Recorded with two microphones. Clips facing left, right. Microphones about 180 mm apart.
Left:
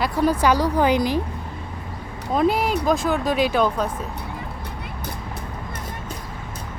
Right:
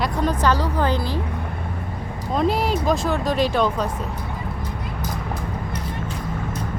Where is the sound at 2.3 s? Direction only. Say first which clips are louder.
Left 1 dB; centre (ahead or behind).